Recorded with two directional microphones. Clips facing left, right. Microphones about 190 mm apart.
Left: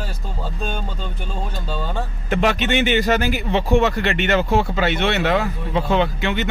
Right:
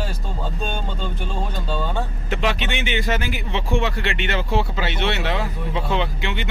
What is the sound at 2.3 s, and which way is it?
Speech, 45° left (ahead or behind).